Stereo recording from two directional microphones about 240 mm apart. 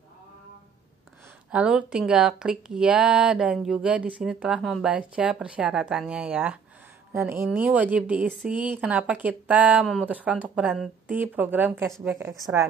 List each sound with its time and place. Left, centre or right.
1.5 s a woman's voice: centre